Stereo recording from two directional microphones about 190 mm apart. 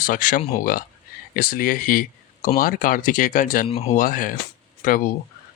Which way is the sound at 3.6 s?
30° left (ahead or behind).